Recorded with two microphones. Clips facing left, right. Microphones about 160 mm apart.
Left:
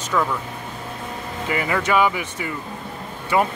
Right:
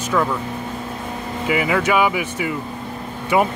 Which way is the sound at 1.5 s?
10° right (ahead or behind).